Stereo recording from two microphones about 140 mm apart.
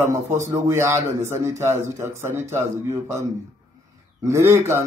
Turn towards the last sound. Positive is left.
turn(degrees=-20)  # may be behind; listen again after turning